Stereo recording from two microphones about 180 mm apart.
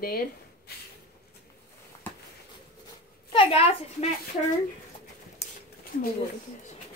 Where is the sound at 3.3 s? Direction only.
30° left (ahead or behind).